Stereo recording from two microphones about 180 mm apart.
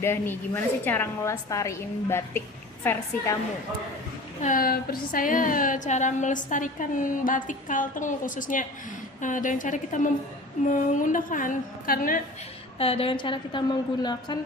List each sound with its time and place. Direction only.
0.0 s a woman's voice: 10° left (ahead or behind)
4.4 s a woman's voice: 50° left (ahead or behind)
12.8 s a woman's voice: 30° left (ahead or behind)